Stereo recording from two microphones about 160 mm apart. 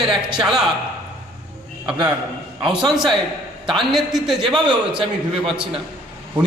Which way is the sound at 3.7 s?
Centre (ahead or behind).